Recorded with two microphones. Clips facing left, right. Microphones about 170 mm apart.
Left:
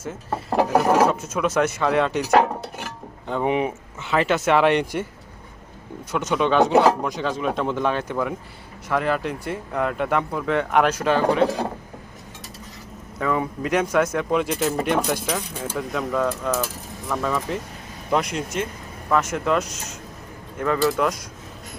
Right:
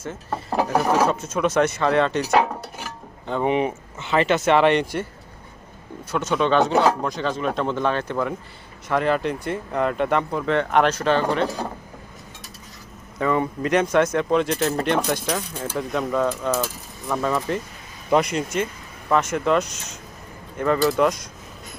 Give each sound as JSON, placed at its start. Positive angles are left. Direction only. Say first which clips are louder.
{"t": 0.0, "sound": "speech", "louder": "left 1 dB", "side_deg": 10}
{"t": 6.1, "sound": "speech", "louder": "even", "side_deg": 15}
{"t": 13.1, "sound": "speech", "louder": "right 2 dB", "side_deg": 0}